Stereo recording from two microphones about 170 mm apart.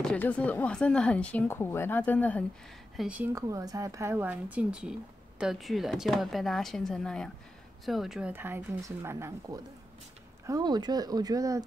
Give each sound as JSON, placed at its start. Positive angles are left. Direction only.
{"t": 0.0, "sound": "speech", "side_deg": 10}
{"t": 3.0, "sound": "speech", "side_deg": -10}
{"t": 3.4, "sound": "speech", "side_deg": -20}